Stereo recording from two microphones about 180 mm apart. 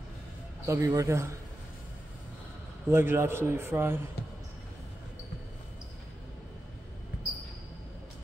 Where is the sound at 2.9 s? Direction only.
15° right (ahead or behind).